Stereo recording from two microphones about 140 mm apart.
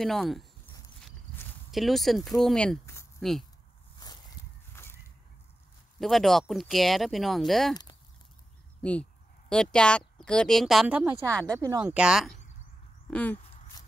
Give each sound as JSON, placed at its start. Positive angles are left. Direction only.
{"t": 0.0, "sound": "speech", "side_deg": 0}
{"t": 1.3, "sound": "walk", "side_deg": 15}
{"t": 1.7, "sound": "speech", "side_deg": 0}
{"t": 4.8, "sound": "a sound", "side_deg": 20}
{"t": 5.9, "sound": "speech", "side_deg": 0}
{"t": 9.5, "sound": "speech", "side_deg": 5}
{"t": 11.2, "sound": "speech", "side_deg": 10}
{"t": 11.6, "sound": "speech", "side_deg": -25}
{"t": 11.9, "sound": "speech", "side_deg": -5}
{"t": 13.1, "sound": "speech", "side_deg": 10}